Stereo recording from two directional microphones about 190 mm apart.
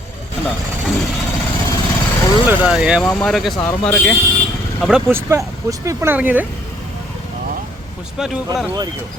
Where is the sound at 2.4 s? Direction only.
5° right (ahead or behind).